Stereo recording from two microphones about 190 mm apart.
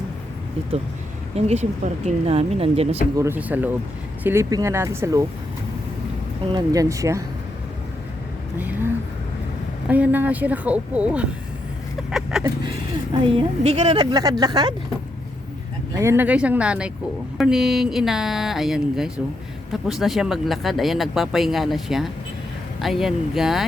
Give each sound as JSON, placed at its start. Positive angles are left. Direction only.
{"t": 1.4, "sound": "speech", "side_deg": -35}
{"t": 3.2, "sound": "a woman's voice", "side_deg": -10}
{"t": 6.4, "sound": "a woman's voice", "side_deg": -20}
{"t": 8.5, "sound": "a sound", "side_deg": -10}
{"t": 9.9, "sound": "a woman's voice", "side_deg": -10}
{"t": 12.3, "sound": "speech", "side_deg": -5}
{"t": 13.2, "sound": "speech", "side_deg": -30}
{"t": 14.0, "sound": "speech", "side_deg": -20}
{"t": 16.0, "sound": "a woman's voice", "side_deg": -10}